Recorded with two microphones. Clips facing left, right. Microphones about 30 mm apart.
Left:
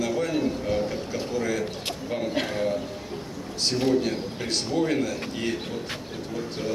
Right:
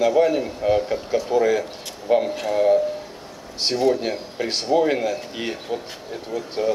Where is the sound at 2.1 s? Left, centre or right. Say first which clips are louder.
Right 13 dB; right.